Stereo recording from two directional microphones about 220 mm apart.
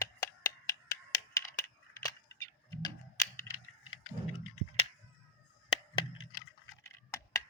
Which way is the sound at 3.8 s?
70° left (ahead or behind).